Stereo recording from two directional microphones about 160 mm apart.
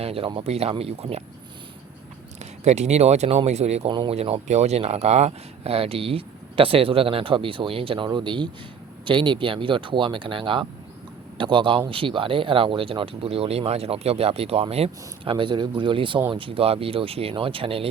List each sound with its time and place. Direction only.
0.0 s speech: 35° right (ahead or behind)
2.6 s speech: 45° right (ahead or behind)